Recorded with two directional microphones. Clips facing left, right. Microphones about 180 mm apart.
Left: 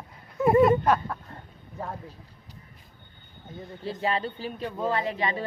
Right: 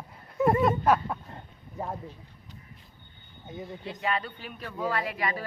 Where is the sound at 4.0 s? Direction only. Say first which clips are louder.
Left 3 dB; 30° left (ahead or behind).